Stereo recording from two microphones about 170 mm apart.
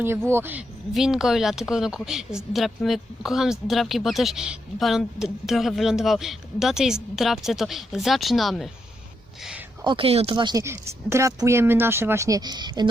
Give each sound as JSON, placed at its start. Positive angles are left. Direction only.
{"t": 0.3, "sound": "speech", "side_deg": -15}
{"t": 9.8, "sound": "speech", "side_deg": -30}